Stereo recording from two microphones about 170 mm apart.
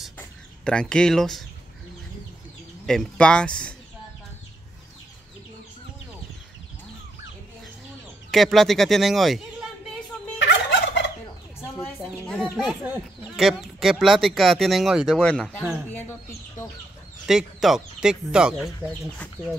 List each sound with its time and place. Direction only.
0.2 s chicken: 5° left (ahead or behind)
2.9 s speech: 5° left (ahead or behind)
8.3 s speech: centre (ahead or behind)
10.4 s fowl: 90° left
12.3 s speech: 5° left (ahead or behind)
12.8 s speech: 10° right (ahead or behind); by 16.6 s 15° left (ahead or behind)
17.3 s speech: centre (ahead or behind)